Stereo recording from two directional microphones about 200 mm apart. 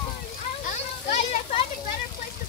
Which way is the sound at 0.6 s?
35° left (ahead or behind).